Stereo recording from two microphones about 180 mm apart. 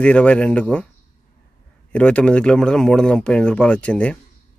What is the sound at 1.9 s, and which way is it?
Speech, 5° left (ahead or behind).